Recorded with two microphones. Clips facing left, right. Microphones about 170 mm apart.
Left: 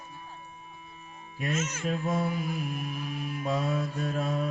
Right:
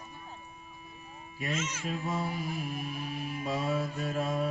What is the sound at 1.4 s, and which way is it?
Mantra, 45° left (ahead or behind).